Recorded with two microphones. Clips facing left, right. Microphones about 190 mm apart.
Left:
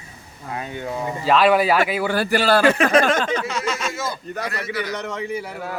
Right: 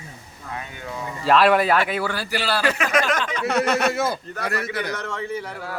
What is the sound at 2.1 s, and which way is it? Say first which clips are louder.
Speech: left 7 dB; 50° left (ahead or behind).